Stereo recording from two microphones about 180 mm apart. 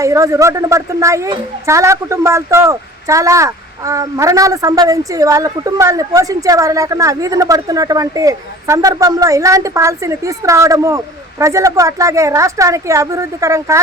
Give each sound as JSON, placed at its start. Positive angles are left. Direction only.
{"t": 0.0, "sound": "speech", "side_deg": -15}